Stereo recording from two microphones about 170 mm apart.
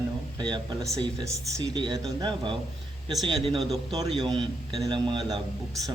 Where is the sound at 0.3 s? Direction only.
25° right (ahead or behind).